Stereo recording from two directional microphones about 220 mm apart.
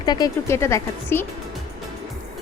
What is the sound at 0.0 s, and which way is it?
Speech, 20° left (ahead or behind).